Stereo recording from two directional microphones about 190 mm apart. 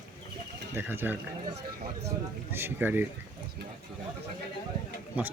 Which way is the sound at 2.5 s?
10° right (ahead or behind).